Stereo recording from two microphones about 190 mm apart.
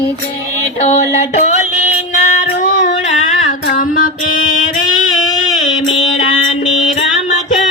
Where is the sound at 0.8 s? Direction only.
35° left (ahead or behind).